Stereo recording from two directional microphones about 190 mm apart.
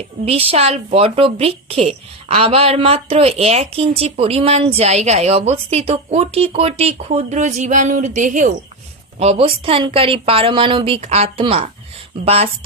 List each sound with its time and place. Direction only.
0.3 s a woman's voice: 30° right (ahead or behind)